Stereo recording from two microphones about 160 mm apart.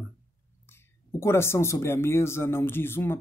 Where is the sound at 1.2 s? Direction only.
15° left (ahead or behind).